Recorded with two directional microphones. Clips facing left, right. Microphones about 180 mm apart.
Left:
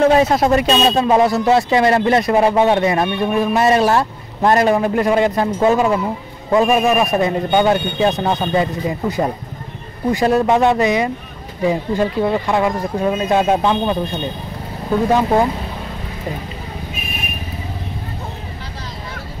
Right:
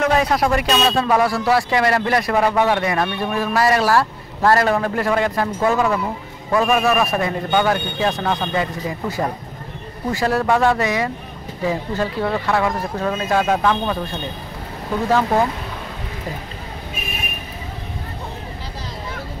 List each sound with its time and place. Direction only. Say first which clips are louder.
0.0 s speech: left 5 dB; 25° left (ahead or behind)